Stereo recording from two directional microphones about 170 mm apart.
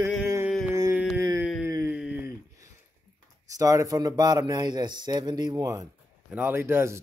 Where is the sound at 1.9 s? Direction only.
5° right (ahead or behind).